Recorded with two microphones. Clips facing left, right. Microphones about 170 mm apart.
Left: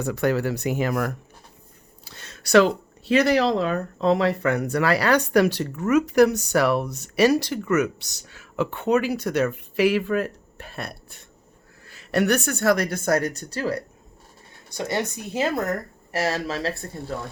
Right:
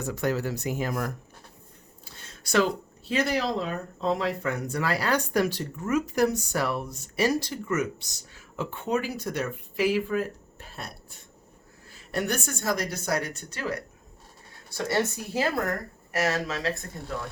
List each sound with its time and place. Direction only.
0.0 s speech: 65° left (ahead or behind)
2.0 s a sound: 75° left (ahead or behind)
3.1 s speech: 75° left (ahead or behind); by 13.8 s 35° left (ahead or behind)
14.7 s speech: 20° left (ahead or behind)
16.1 s speech: 30° left (ahead or behind)